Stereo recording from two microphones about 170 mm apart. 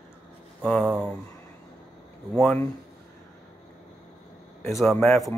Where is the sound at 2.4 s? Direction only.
10° left (ahead or behind).